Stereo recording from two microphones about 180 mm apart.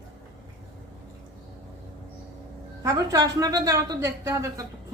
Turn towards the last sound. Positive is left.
turn(degrees=-15)  # may be behind; listen again after turning